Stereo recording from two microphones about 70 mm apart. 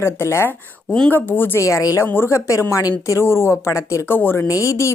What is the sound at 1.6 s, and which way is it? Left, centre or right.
Speech, left.